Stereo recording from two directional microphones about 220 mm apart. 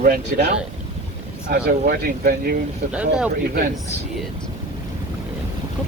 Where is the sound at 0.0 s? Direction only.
45° right (ahead or behind).